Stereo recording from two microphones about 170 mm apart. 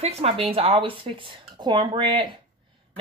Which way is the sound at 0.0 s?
35° right (ahead or behind).